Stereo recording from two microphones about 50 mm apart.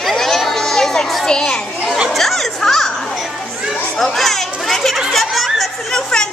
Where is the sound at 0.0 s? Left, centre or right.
Centre.